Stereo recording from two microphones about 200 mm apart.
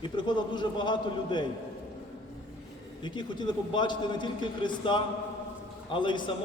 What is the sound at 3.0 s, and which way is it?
A man's voice, 20° left (ahead or behind).